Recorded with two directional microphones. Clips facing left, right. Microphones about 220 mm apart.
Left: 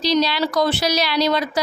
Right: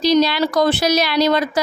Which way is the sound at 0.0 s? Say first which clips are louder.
Right 4 dB; 50° right (ahead or behind).